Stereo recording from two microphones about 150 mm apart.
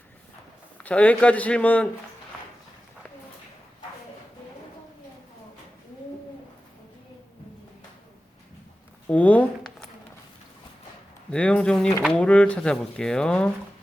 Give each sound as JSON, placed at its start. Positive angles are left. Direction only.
{"t": 0.8, "sound": "a man's voice", "side_deg": 10}
{"t": 9.0, "sound": "a sound", "side_deg": 10}
{"t": 11.3, "sound": "speech", "side_deg": 10}